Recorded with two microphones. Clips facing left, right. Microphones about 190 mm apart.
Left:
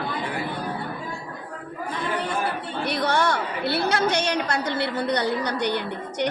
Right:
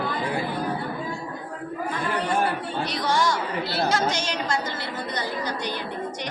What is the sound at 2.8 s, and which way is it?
Chatter, 60° left (ahead or behind).